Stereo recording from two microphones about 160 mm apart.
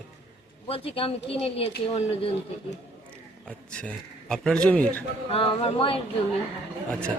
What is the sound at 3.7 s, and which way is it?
Speech, 5° left (ahead or behind).